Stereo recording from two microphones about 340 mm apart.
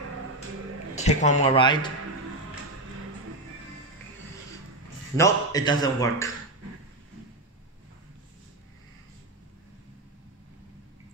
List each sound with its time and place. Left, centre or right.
0.9 s a man's voice: left
5.1 s a man's voice: centre